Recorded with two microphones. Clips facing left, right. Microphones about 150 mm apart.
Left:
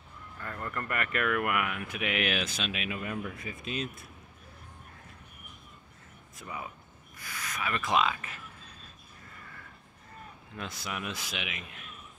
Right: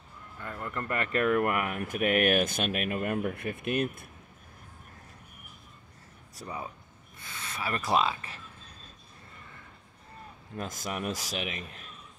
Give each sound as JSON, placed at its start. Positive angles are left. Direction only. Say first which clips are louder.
{"t": 0.4, "sound": "speech", "louder": "right 1 dB", "side_deg": -15}
{"t": 0.8, "sound": "speech", "louder": "right 5 dB", "side_deg": -30}
{"t": 6.3, "sound": "speech", "louder": "right 2 dB", "side_deg": -35}
{"t": 10.5, "sound": "a man's voice", "louder": "right 3 dB", "side_deg": -45}